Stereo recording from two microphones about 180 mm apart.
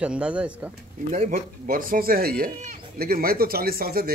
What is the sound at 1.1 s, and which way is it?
Speech, 45° right (ahead or behind).